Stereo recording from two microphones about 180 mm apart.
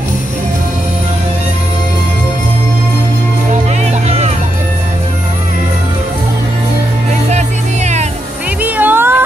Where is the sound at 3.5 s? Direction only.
40° right (ahead or behind).